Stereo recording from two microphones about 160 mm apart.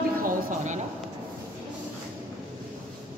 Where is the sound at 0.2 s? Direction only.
60° right (ahead or behind).